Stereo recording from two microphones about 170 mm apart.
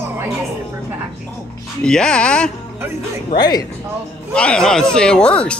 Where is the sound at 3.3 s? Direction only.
25° left (ahead or behind).